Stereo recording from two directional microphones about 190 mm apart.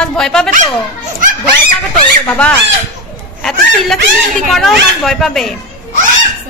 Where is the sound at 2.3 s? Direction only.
10° left (ahead or behind).